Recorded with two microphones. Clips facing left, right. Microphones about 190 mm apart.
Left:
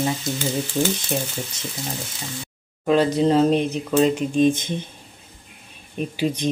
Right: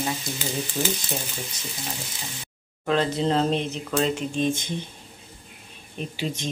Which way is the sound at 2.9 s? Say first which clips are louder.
Left 5 dB; 15° left (ahead or behind).